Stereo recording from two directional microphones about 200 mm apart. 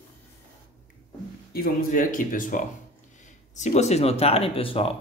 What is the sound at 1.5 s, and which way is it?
Speech, 45° left (ahead or behind).